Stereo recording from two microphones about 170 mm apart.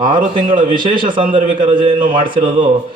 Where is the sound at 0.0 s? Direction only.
30° right (ahead or behind).